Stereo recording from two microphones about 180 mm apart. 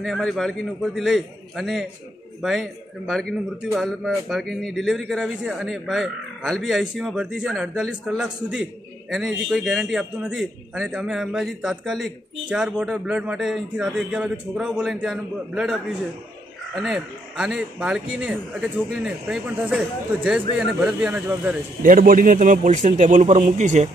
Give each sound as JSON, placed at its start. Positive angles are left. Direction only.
{"t": 0.0, "sound": "a man's voice", "side_deg": 0}
{"t": 21.8, "sound": "a man's voice", "side_deg": -50}